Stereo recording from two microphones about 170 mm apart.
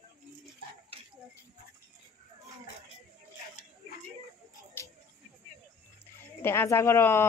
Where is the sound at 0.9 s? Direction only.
35° right (ahead or behind).